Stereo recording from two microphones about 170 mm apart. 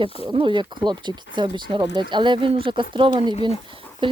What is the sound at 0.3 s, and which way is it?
Speech, 30° right (ahead or behind).